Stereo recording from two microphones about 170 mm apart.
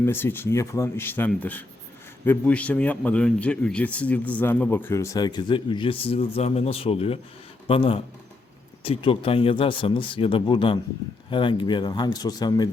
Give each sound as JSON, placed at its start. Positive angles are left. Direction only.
{"t": 0.0, "sound": "a man's voice", "side_deg": 15}